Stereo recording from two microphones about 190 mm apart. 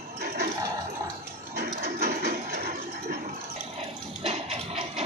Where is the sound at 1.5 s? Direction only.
60° right (ahead or behind).